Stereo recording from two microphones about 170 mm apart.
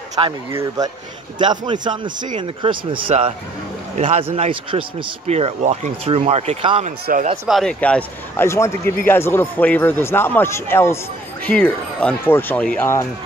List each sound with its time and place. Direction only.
0.2 s a man's voice: 30° right (ahead or behind)
0.5 s speech: 15° right (ahead or behind)
1.4 s a man's voice: 25° right (ahead or behind)
7.1 s speech: 55° right (ahead or behind)
7.4 s a man's voice: centre (ahead or behind)